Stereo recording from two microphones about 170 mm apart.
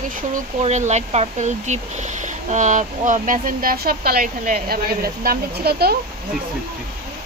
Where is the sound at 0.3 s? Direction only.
45° right (ahead or behind); by 5.9 s 70° right (ahead or behind).